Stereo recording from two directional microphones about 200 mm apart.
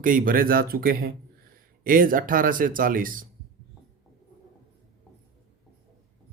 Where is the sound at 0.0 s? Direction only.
45° right (ahead or behind).